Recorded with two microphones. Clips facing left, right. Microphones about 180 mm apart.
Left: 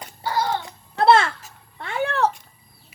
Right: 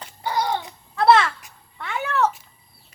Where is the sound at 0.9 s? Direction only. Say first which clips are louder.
Even; 25° left (ahead or behind).